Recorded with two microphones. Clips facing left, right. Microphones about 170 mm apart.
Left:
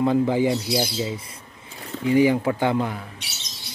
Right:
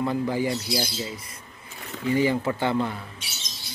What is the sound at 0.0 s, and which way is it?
Speech, 20° left (ahead or behind).